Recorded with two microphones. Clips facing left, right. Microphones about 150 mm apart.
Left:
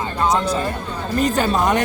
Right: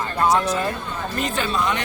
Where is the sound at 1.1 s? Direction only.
40° left (ahead or behind).